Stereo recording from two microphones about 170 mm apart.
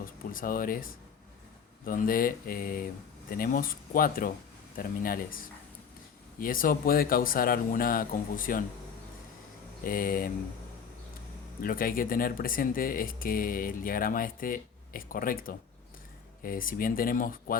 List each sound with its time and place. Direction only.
0.0 s speech: 55° left (ahead or behind)
9.8 s speech: 55° left (ahead or behind)
11.6 s speech: 55° left (ahead or behind)